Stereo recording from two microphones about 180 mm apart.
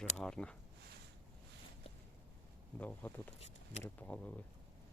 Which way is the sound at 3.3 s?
35° left (ahead or behind).